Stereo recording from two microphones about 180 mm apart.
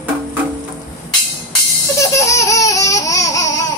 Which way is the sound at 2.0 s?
15° left (ahead or behind).